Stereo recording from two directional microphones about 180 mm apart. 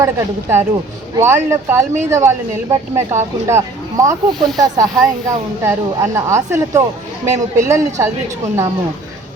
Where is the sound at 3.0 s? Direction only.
15° right (ahead or behind).